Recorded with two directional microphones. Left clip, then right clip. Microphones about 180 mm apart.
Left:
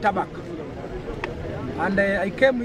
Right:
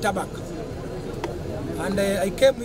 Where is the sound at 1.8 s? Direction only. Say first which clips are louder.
Left 2 dB; 35° right (ahead or behind).